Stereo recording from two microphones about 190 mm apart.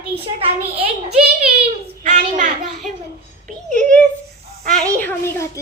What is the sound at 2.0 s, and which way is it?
Speech, 40° right (ahead or behind).